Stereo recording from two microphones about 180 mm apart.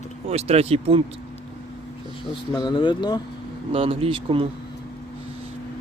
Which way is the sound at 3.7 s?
30° right (ahead or behind).